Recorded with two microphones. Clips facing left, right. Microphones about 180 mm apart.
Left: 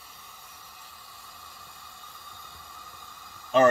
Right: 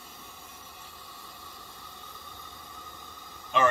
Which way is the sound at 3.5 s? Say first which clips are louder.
Left 6 dB; 40° left (ahead or behind).